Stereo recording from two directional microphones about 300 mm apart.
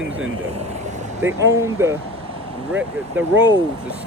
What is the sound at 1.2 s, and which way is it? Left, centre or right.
Speech, centre.